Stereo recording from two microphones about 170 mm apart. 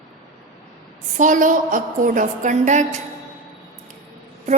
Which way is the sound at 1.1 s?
50° right (ahead or behind).